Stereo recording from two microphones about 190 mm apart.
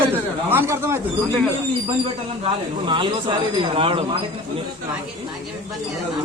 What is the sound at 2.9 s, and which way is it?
Speech, 25° right (ahead or behind).